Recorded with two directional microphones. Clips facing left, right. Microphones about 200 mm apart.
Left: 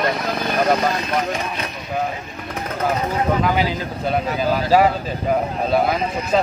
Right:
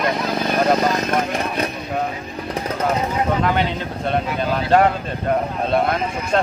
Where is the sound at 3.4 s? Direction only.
5° left (ahead or behind).